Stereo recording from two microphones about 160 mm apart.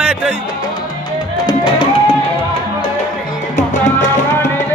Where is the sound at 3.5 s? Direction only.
50° left (ahead or behind).